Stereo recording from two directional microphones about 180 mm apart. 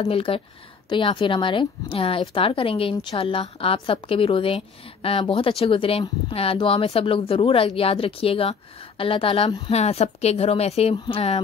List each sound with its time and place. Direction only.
0.0 s a woman's voice: 30° left (ahead or behind)